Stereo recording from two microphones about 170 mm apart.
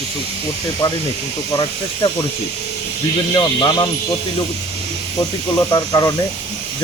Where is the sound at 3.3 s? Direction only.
25° left (ahead or behind).